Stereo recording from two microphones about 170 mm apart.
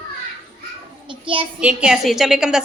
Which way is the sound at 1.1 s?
30° right (ahead or behind).